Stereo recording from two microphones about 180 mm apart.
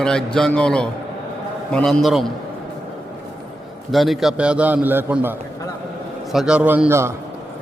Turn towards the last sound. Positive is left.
turn(degrees=-15)  # may be behind; listen again after turning